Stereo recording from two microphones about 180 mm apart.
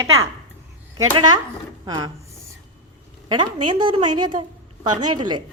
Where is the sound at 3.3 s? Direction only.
25° right (ahead or behind).